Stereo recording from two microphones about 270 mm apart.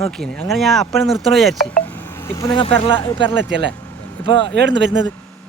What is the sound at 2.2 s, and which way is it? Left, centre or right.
Speech, centre.